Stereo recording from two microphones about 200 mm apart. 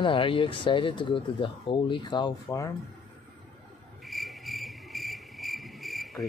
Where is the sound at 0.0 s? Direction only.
25° left (ahead or behind).